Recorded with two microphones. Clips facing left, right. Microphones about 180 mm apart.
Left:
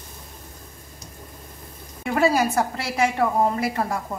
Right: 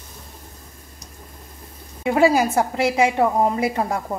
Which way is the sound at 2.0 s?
20° right (ahead or behind).